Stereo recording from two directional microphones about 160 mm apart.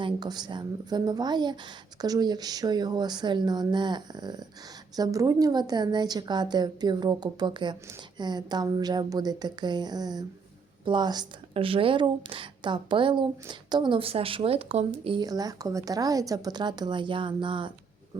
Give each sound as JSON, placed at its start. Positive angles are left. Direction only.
{"t": 0.0, "sound": "speech", "side_deg": -25}